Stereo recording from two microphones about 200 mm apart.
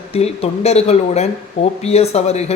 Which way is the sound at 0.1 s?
30° left (ahead or behind).